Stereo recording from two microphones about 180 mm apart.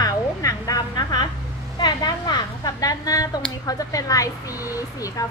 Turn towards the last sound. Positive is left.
turn(degrees=20)  # may be behind; listen again after turning